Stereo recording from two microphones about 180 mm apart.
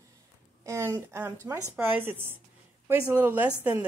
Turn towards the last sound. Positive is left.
turn(degrees=-10)  # may be behind; listen again after turning